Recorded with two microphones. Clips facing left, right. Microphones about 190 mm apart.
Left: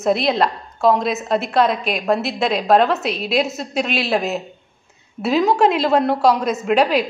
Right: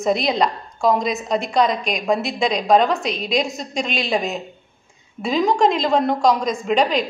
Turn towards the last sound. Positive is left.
turn(degrees=5)  # may be behind; listen again after turning